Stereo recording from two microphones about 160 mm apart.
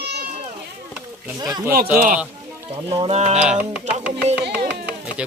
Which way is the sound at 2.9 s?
40° right (ahead or behind).